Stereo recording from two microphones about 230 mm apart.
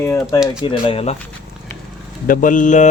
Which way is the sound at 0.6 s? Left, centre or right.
Left.